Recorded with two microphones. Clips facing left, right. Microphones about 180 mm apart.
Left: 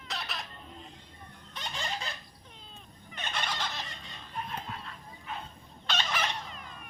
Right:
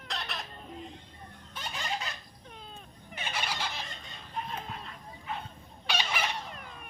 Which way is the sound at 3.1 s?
10° right (ahead or behind).